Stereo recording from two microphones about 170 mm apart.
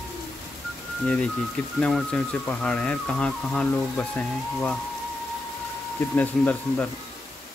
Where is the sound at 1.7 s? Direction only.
5° left (ahead or behind).